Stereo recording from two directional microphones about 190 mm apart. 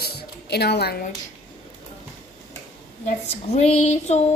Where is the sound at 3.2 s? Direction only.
35° left (ahead or behind).